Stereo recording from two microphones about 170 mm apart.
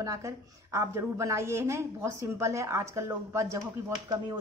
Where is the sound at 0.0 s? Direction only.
20° right (ahead or behind).